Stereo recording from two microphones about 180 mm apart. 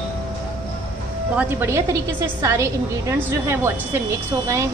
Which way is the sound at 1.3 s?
10° right (ahead or behind).